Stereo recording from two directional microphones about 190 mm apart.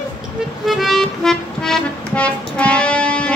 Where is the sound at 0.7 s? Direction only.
Centre (ahead or behind).